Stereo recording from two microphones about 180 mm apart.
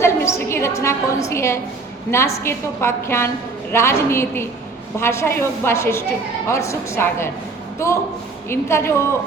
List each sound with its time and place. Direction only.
0.0 s a woman's voice: 15° left (ahead or behind)